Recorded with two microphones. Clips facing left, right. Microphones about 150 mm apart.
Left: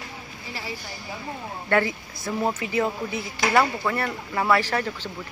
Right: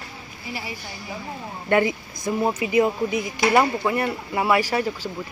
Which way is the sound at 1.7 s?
15° right (ahead or behind).